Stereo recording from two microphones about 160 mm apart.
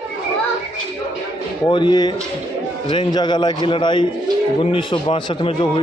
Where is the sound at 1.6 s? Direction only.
30° left (ahead or behind).